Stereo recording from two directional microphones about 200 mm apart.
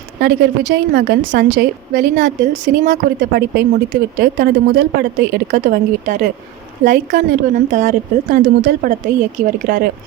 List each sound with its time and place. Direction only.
0.2 s a woman's voice: 55° right (ahead or behind)
2.4 s a woman's voice: 40° right (ahead or behind)